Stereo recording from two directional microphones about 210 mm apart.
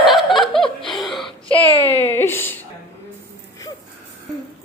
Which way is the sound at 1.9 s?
10° left (ahead or behind).